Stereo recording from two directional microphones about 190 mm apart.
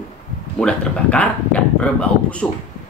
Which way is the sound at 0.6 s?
5° left (ahead or behind).